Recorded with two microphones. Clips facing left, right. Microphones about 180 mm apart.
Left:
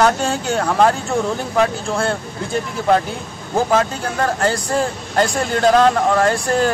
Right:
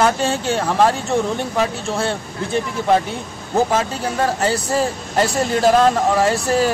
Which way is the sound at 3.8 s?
5° right (ahead or behind).